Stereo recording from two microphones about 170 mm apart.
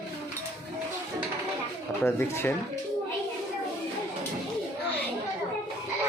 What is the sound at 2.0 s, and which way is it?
Speech, 15° left (ahead or behind).